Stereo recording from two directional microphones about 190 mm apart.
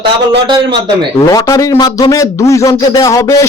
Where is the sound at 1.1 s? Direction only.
15° left (ahead or behind).